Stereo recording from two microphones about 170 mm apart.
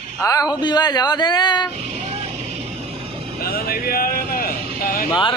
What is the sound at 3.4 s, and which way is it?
Vehicle, 65° left (ahead or behind).